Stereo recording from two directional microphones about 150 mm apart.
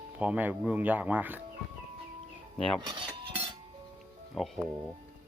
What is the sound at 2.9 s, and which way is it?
Cutlery, 35° right (ahead or behind).